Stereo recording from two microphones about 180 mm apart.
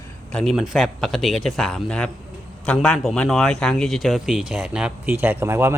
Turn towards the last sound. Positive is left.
turn(degrees=-15)  # may be behind; listen again after turning